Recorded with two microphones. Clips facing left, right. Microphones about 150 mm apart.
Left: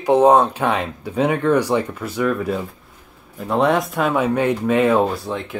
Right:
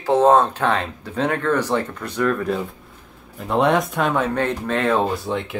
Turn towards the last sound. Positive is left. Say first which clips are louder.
# right 1 dB
turn(degrees=0)  # may be behind; listen again after turning